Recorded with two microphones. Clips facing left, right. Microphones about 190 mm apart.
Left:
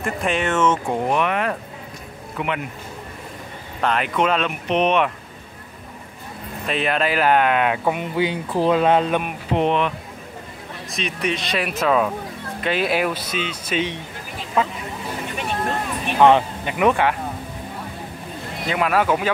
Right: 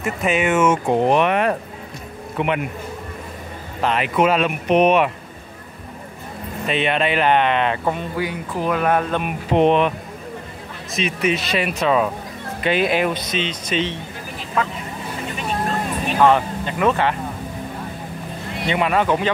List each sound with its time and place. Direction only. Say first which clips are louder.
0.0 s speech: right 2 dB; 5° right (ahead or behind)
1.0 s a man's voice: right 4 dB; 20° right (ahead or behind)
3.8 s speech: right 2 dB; centre (ahead or behind)
6.6 s speech: right 2 dB; centre (ahead or behind)
8.0 s speech: left 2 dB; 25° left (ahead or behind)
9.6 s speech: right 5 dB; 20° right (ahead or behind)
10.9 s speech: right 4 dB; centre (ahead or behind)
16.2 s speech: left 2 dB; 20° left (ahead or behind)
18.7 s speech: right 1 dB; centre (ahead or behind)